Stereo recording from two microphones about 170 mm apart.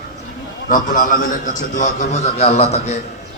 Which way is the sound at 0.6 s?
50° left (ahead or behind).